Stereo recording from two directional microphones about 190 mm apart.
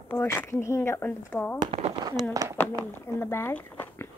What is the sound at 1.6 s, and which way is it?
Firecracker, 30° right (ahead or behind).